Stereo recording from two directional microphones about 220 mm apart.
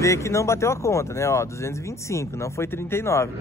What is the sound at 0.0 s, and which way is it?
A man's voice, 15° left (ahead or behind).